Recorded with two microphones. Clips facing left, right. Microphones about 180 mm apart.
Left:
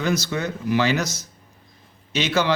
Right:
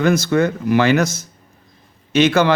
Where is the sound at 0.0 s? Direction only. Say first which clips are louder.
Right 8 dB; 55° right (ahead or behind).